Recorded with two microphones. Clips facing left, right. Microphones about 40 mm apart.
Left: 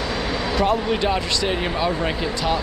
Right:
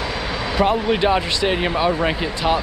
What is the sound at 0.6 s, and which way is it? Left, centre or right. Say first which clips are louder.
Speech: right 3 dB; centre.